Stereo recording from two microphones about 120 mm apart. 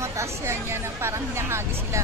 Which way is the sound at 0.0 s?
25° right (ahead or behind).